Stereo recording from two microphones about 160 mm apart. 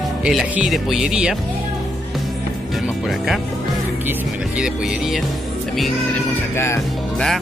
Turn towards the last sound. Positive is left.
turn(degrees=15)  # may be behind; listen again after turning